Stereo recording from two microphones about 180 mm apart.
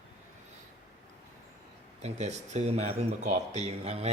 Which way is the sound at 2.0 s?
40° right (ahead or behind).